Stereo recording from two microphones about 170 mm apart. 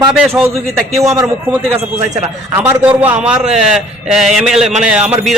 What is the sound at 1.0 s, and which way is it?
Speech, 20° right (ahead or behind).